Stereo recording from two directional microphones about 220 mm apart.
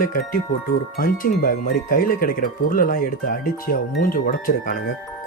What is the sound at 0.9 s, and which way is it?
Speech, 40° left (ahead or behind).